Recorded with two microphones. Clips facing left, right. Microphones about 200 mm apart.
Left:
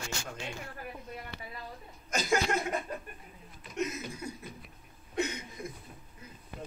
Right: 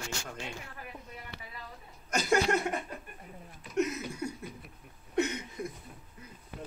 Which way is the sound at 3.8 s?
70° right (ahead or behind).